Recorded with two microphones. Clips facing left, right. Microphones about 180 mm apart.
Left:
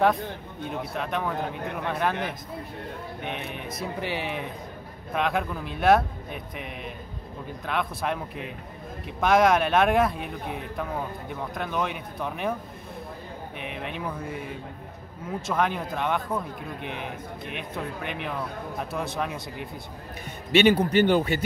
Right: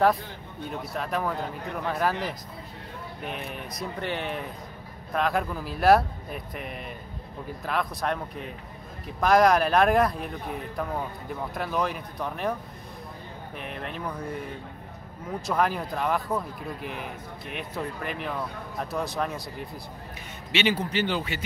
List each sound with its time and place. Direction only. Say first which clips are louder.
0.9 s speech: right 1 dB; centre (ahead or behind)
3.3 s speech: left 1 dB; centre (ahead or behind)
13.6 s speech: left 1 dB; centre (ahead or behind)
20.5 s a man's voice: left 7 dB; 55° left (ahead or behind)